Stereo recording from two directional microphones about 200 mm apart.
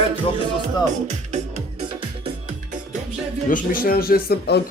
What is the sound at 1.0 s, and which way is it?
Speech, 35° right (ahead or behind).